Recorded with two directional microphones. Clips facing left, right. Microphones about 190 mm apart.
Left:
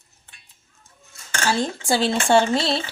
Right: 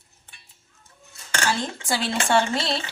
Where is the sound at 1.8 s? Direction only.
25° left (ahead or behind).